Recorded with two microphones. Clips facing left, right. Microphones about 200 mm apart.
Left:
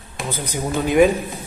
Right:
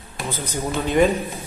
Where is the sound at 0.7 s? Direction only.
15° left (ahead or behind).